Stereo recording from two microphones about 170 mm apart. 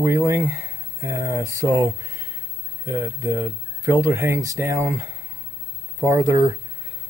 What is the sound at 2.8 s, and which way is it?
Speech, 15° right (ahead or behind).